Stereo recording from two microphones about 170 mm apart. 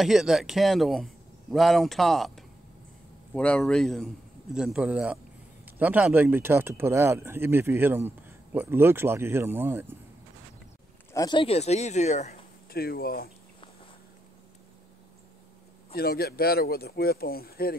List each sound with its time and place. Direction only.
0.0 s speech: centre (ahead or behind)
11.1 s speech: 25° left (ahead or behind); by 12.4 s 45° left (ahead or behind)
12.7 s speech: 60° left (ahead or behind)
15.9 s speech: 65° left (ahead or behind)